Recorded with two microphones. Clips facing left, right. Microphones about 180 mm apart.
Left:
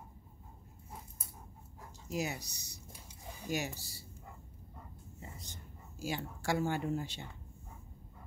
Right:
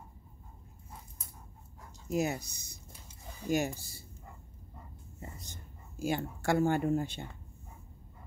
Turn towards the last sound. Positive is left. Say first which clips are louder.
# right 6 dB
turn(degrees=-50)  # may be behind; listen again after turning